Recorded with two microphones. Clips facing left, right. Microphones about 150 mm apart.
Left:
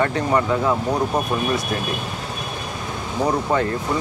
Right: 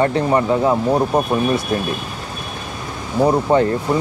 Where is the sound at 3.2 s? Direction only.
30° right (ahead or behind).